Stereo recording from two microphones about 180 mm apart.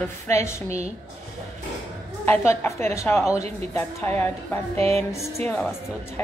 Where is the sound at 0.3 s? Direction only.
15° left (ahead or behind).